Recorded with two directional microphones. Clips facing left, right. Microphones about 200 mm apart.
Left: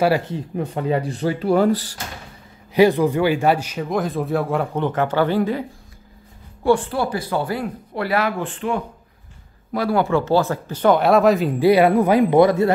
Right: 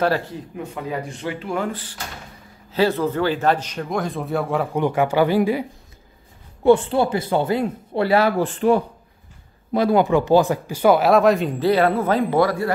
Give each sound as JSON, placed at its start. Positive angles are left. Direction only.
{"t": 0.6, "sound": "speech", "side_deg": 30}
{"t": 2.7, "sound": "speech", "side_deg": 15}
{"t": 4.7, "sound": "speech", "side_deg": -10}
{"t": 6.6, "sound": "speech", "side_deg": -25}
{"t": 9.7, "sound": "speech", "side_deg": -20}
{"t": 11.6, "sound": "speech", "side_deg": 15}